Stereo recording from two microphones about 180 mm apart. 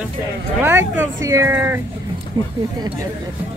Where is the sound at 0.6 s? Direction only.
10° right (ahead or behind).